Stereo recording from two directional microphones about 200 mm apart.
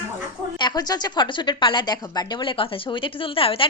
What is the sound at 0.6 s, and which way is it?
A woman's voice, 20° left (ahead or behind).